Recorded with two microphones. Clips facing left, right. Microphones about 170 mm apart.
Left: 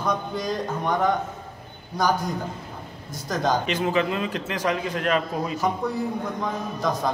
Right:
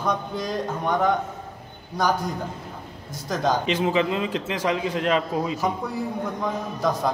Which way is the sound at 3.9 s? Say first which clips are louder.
Right 1 dB; 20° right (ahead or behind).